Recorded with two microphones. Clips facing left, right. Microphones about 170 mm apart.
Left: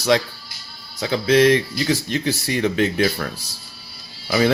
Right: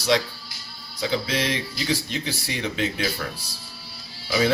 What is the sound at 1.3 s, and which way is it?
Speech, 55° left (ahead or behind).